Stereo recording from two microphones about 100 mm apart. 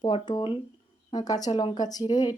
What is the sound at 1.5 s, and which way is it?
Speech, 60° left (ahead or behind).